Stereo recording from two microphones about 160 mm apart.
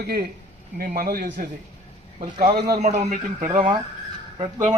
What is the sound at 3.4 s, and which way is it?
Speech, 30° right (ahead or behind).